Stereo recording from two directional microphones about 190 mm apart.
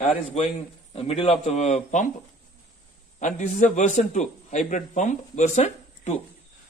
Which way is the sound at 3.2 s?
40° left (ahead or behind).